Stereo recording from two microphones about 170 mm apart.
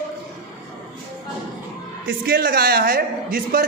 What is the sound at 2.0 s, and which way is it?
A man's voice, 65° right (ahead or behind).